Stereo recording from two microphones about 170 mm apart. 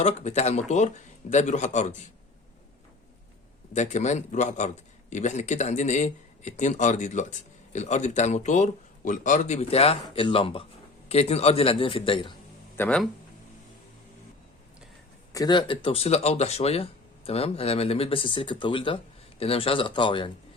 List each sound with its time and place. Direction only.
0.0 s speech: 40° left (ahead or behind)
3.7 s speech: 45° left (ahead or behind)
12.7 s speech: 10° left (ahead or behind)
15.3 s speech: 25° left (ahead or behind)